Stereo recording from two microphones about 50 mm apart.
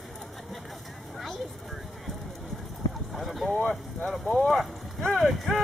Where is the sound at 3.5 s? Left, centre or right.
Left.